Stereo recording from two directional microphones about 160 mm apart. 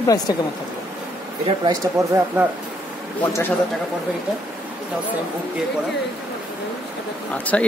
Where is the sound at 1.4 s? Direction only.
25° right (ahead or behind).